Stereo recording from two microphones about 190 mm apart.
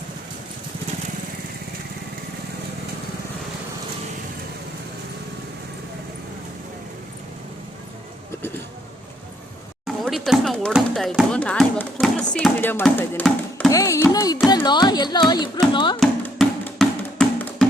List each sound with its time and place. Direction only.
9.8 s speech: centre (ahead or behind)
13.7 s music: 15° left (ahead or behind)
14.3 s carnatic music: 20° left (ahead or behind)
16.0 s music: 5° left (ahead or behind)